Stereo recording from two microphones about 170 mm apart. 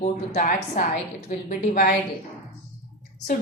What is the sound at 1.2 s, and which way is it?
Speech, 50° left (ahead or behind).